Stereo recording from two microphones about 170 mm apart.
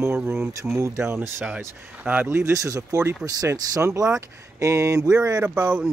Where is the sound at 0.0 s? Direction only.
10° right (ahead or behind).